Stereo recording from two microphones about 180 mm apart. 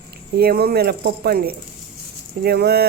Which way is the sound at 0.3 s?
60° right (ahead or behind).